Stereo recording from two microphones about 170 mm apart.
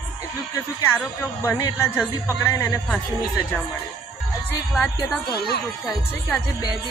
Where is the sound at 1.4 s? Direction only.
20° left (ahead or behind).